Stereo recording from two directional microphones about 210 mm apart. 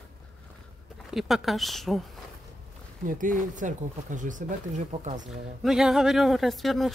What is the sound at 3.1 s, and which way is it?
Speech, 40° right (ahead or behind).